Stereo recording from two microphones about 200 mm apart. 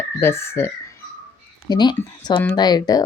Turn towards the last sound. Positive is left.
turn(degrees=20)  # may be behind; listen again after turning